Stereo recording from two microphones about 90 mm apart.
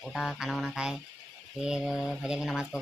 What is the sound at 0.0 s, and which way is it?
Speech, centre (ahead or behind).